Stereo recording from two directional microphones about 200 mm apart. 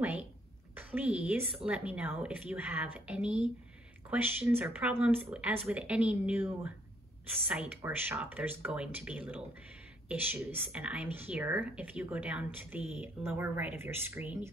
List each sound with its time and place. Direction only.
0.0 s a woman's voice: 5° right (ahead or behind)